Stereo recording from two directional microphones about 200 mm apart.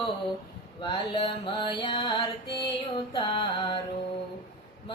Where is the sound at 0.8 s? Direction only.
25° left (ahead or behind).